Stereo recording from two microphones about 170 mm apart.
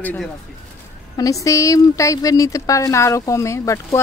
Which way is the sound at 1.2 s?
20° left (ahead or behind).